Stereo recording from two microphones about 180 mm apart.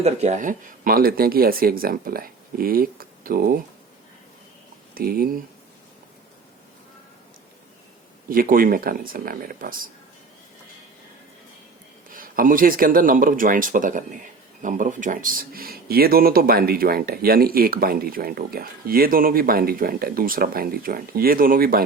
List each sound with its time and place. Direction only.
0.0 s speech: 40° right (ahead or behind); by 3.6 s 55° right (ahead or behind)
4.9 s speech: 55° right (ahead or behind)
8.3 s speech: 50° right (ahead or behind)
12.1 s speech: 50° right (ahead or behind)